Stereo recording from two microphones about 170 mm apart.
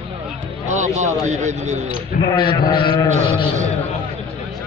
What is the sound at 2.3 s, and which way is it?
Speech, 30° left (ahead or behind).